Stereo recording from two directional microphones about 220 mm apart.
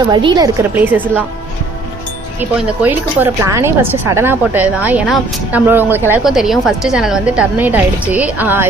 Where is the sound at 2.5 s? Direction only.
10° right (ahead or behind).